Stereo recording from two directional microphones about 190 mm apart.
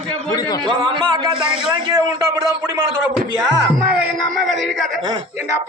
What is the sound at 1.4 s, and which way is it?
Speech, 5° right (ahead or behind).